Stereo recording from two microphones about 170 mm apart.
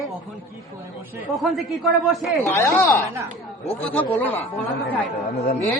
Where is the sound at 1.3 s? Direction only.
Centre (ahead or behind).